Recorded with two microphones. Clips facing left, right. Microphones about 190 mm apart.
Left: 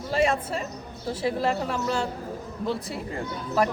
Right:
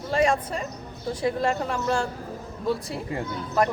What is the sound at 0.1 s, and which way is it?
Speech, 5° left (ahead or behind).